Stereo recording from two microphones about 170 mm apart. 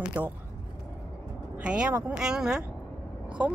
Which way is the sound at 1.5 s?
5° right (ahead or behind).